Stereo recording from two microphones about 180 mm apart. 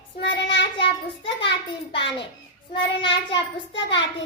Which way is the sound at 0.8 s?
30° left (ahead or behind).